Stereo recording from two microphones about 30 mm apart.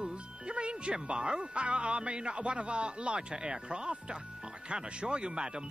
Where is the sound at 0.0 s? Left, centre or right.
Right.